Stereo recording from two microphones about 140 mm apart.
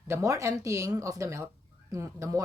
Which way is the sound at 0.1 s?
20° right (ahead or behind).